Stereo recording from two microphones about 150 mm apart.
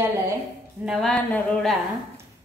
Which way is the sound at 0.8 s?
Centre (ahead or behind).